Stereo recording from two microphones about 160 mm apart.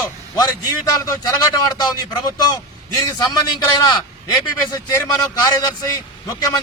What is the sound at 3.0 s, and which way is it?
A man's voice, 25° left (ahead or behind).